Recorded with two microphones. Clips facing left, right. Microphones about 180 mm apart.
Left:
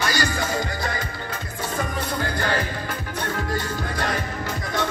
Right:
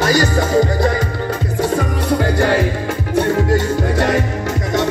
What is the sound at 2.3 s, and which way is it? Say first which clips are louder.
Music: right 9 dB; 80° right.